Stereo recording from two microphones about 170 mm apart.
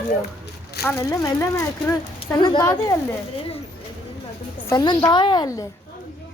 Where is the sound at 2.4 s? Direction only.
25° left (ahead or behind).